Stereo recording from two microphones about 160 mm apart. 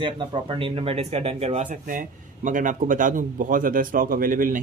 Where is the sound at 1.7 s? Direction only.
55° right (ahead or behind).